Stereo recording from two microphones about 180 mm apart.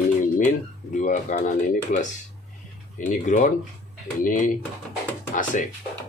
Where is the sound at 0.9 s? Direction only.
45° left (ahead or behind).